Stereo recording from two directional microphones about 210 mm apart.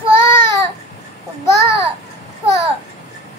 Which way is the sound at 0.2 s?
10° left (ahead or behind).